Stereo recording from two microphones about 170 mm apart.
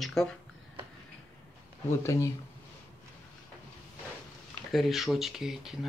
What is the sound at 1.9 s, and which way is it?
Speech, 15° left (ahead or behind).